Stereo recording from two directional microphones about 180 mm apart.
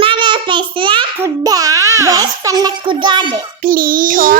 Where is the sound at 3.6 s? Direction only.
50° right (ahead or behind).